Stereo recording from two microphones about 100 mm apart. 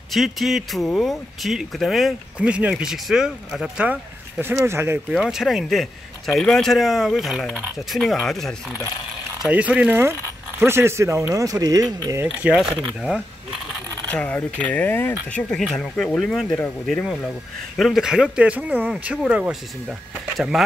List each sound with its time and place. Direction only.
0.1 s speech: centre (ahead or behind)
2.3 s speech: 10° right (ahead or behind)
3.8 s speech: 15° right (ahead or behind)
5.1 s speech: 5° right (ahead or behind)
9.5 s speech: 15° right (ahead or behind); by 12.2 s 40° right (ahead or behind)
12.2 s speech: 15° right (ahead or behind)
12.5 s speech: centre (ahead or behind)
14.0 s speech: 15° left (ahead or behind)
15.5 s speech: 5° left (ahead or behind)
20.3 s speech: centre (ahead or behind)